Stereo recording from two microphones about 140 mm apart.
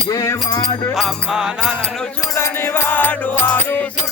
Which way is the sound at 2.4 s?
15° left (ahead or behind).